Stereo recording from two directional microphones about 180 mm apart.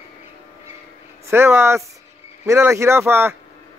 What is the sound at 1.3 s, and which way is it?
Speech, 15° right (ahead or behind).